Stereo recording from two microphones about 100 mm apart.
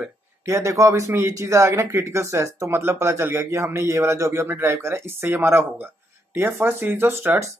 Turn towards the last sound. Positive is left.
turn(degrees=-25)  # may be behind; listen again after turning